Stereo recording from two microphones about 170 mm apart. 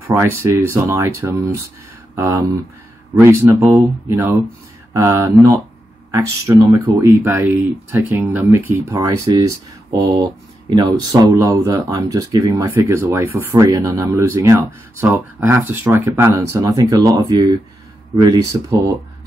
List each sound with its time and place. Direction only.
0.1 s speech: 15° right (ahead or behind)